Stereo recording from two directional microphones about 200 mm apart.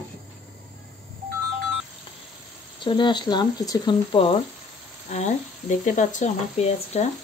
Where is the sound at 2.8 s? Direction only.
25° left (ahead or behind).